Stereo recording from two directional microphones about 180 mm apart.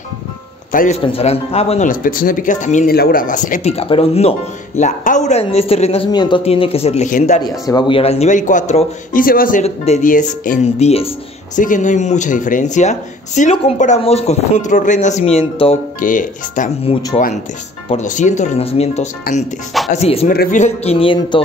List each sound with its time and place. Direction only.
0.7 s speech: 45° left (ahead or behind)
1.0 s speech: 30° left (ahead or behind)
3.7 s speech: 30° left (ahead or behind)
7.4 s speech: 25° left (ahead or behind)
16.0 s speech: 45° left (ahead or behind)
19.3 s speech: 55° left (ahead or behind)
19.9 s speech: 35° left (ahead or behind)
20.2 s speech: 45° left (ahead or behind); by 21.4 s 30° left (ahead or behind)